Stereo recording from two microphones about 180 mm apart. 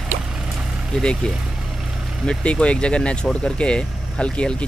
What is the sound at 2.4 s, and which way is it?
Speech, 5° left (ahead or behind).